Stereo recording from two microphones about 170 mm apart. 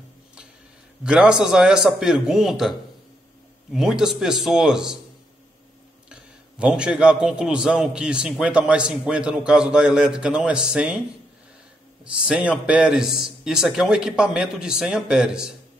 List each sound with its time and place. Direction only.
1.0 s a man's voice: 5° right (ahead or behind)
3.7 s a man's voice: 5° right (ahead or behind)
6.6 s a man's voice: 5° right (ahead or behind)
12.0 s a man's voice: 5° right (ahead or behind)